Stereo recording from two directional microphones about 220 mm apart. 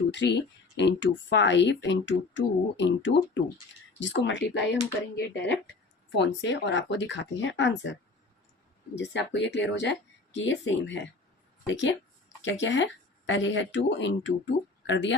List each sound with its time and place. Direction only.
0.1 s speech: 55° left (ahead or behind)
6.1 s speech: 55° left (ahead or behind)
9.0 s speech: 55° left (ahead or behind)